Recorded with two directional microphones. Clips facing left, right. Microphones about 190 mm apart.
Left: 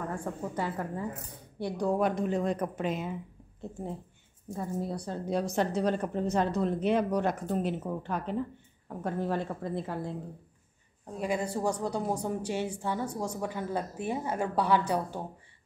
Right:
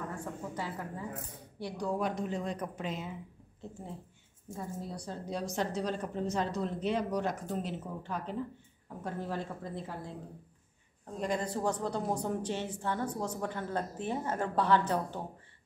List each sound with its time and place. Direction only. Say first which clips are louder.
0.1 s a woman's voice: left 5 dB; 50° left (ahead or behind)
4.7 s a woman's voice: left 6 dB; 60° left (ahead or behind)
11.1 s a woman's voice: left 2 dB; 10° left (ahead or behind)